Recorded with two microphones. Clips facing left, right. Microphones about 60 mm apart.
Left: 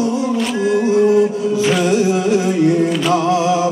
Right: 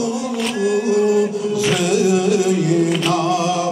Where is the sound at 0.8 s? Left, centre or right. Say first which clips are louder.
Left 4 dB; left.